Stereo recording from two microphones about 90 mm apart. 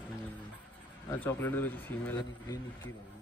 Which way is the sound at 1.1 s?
25° left (ahead or behind).